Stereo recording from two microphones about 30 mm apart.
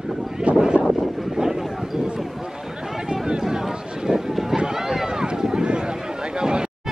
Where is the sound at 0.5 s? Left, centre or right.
Right.